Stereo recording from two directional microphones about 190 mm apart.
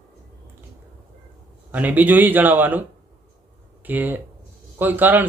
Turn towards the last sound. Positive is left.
turn(degrees=-10)  # may be behind; listen again after turning